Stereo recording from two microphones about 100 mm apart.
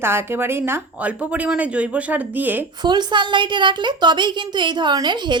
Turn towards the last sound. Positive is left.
turn(degrees=-50)  # may be behind; listen again after turning